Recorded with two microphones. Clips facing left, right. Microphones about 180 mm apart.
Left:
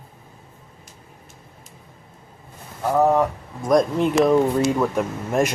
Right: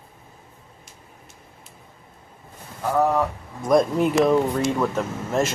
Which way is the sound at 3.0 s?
20° left (ahead or behind).